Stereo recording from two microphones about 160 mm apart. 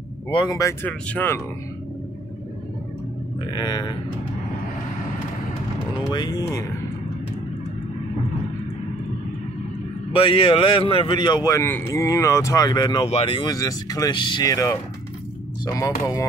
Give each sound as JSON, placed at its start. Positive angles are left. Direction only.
{"t": 0.3, "sound": "a man's voice", "side_deg": 20}
{"t": 0.8, "sound": "speech", "side_deg": 10}
{"t": 3.3, "sound": "a man's voice", "side_deg": 25}
{"t": 6.1, "sound": "a man's voice", "side_deg": 25}
{"t": 10.1, "sound": "a man's voice", "side_deg": 35}
{"t": 13.0, "sound": "a man's voice", "side_deg": 35}